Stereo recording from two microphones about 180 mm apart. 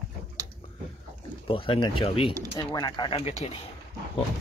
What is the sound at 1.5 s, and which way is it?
Speech, 30° left (ahead or behind).